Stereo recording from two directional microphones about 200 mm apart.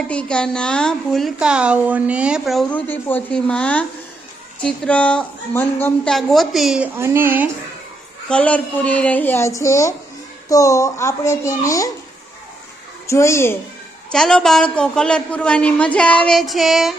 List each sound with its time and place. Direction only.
0.1 s a woman's voice: 5° left (ahead or behind); by 7.5 s 10° right (ahead or behind)
8.3 s speech: 5° left (ahead or behind)
13.1 s a woman's voice: 15° left (ahead or behind)